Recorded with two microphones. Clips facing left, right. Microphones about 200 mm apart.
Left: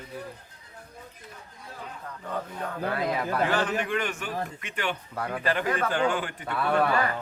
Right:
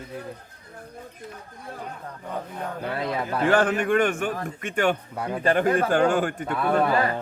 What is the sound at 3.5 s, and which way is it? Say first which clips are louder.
A man's voice: right 6 dB; 50° right (ahead or behind).